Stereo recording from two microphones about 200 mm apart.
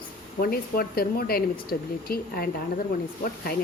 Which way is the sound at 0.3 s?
50° left (ahead or behind).